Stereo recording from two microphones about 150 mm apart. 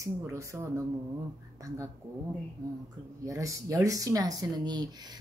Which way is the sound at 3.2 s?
20° right (ahead or behind).